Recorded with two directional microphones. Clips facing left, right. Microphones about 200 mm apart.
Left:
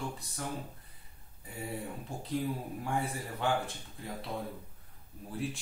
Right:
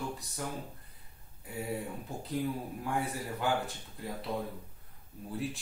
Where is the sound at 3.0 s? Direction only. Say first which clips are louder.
Right 2 dB; centre (ahead or behind).